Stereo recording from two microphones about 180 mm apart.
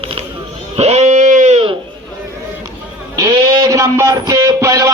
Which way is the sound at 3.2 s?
20° right (ahead or behind).